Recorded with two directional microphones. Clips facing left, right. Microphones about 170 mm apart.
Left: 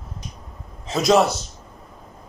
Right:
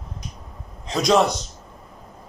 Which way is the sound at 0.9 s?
5° left (ahead or behind).